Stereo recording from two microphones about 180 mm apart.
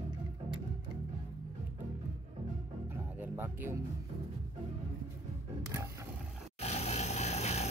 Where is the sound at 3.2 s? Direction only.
10° right (ahead or behind).